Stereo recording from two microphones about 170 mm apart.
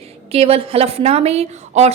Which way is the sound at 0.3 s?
35° right (ahead or behind).